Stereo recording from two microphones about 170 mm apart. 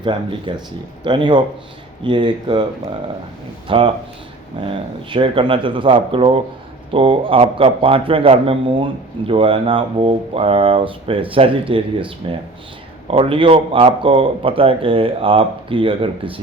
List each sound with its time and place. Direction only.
0.0 s speech: 30° right (ahead or behind)
3.7 s a man's voice: 30° right (ahead or behind)